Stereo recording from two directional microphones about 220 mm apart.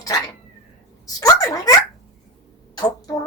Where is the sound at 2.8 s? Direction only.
15° left (ahead or behind).